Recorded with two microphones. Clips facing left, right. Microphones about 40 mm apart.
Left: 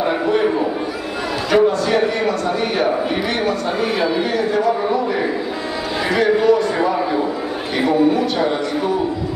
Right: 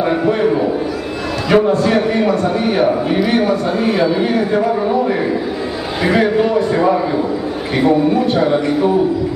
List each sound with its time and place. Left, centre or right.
1.5 s a man's voice: right
3.8 s a man's voice: centre
4.2 s a man's voice: centre